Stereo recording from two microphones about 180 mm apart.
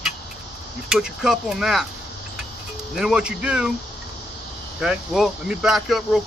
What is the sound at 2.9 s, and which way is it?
Speech, 5° right (ahead or behind).